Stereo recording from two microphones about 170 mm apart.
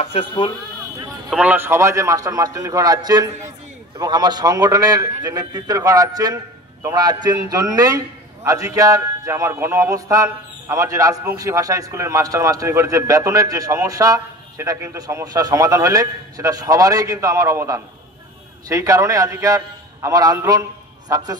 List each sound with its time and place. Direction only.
0.0 s speech: 35° left (ahead or behind)
1.3 s a man's voice: 10° right (ahead or behind)